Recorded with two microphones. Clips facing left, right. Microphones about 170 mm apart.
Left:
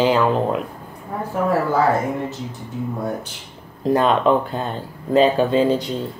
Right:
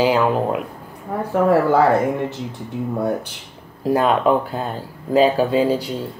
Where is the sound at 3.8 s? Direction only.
5° right (ahead or behind).